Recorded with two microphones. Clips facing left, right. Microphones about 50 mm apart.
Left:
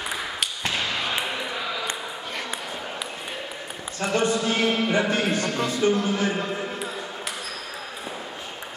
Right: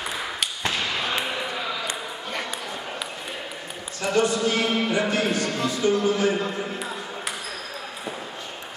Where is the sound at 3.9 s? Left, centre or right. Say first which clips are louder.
Right 1 dB; left.